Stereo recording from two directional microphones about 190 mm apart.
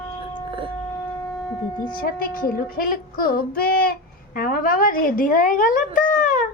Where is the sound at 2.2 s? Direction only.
50° left (ahead or behind).